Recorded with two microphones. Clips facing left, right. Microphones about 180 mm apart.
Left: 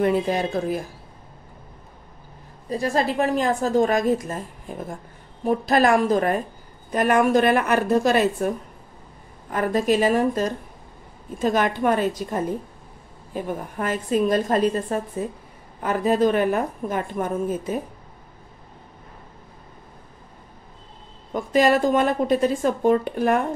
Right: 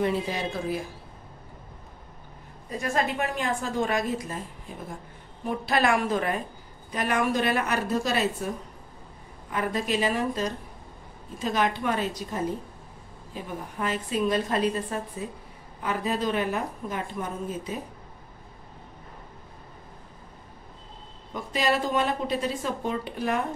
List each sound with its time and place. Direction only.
0.0 s a woman's voice: 55° left (ahead or behind)
2.7 s a woman's voice: 35° left (ahead or behind); by 8.5 s 55° left (ahead or behind)
9.5 s a woman's voice: 45° left (ahead or behind)
21.3 s a woman's voice: 50° left (ahead or behind)